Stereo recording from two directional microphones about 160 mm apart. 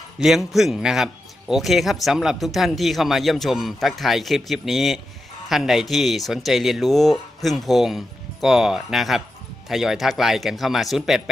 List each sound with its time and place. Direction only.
0.2 s a man's voice: centre (ahead or behind)